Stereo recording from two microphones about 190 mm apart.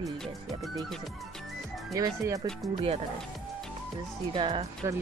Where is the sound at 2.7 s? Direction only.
30° right (ahead or behind).